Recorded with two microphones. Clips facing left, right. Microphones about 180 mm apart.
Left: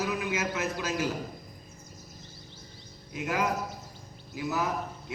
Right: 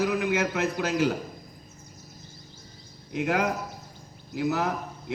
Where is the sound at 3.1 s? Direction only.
65° right (ahead or behind).